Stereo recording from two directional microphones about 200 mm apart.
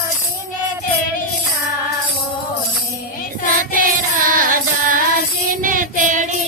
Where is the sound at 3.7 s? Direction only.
45° right (ahead or behind).